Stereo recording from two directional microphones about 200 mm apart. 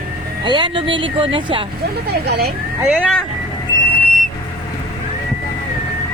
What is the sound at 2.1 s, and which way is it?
Speech, 50° right (ahead or behind).